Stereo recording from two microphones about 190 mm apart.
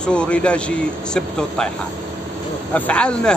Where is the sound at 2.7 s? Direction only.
5° left (ahead or behind).